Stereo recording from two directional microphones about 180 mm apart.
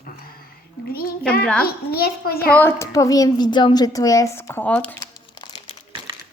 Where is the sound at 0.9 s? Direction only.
55° left (ahead or behind).